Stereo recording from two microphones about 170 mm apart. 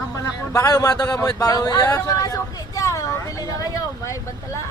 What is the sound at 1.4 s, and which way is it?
Vehicle, 20° left (ahead or behind).